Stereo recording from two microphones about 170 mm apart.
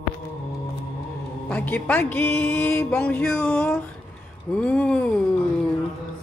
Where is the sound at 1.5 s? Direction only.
10° left (ahead or behind).